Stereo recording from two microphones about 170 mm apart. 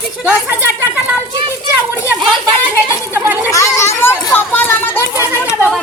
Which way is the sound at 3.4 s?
15° left (ahead or behind).